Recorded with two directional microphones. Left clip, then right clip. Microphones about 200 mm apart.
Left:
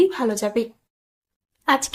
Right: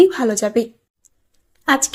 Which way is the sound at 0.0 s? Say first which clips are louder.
Right 5 dB; 20° right (ahead or behind).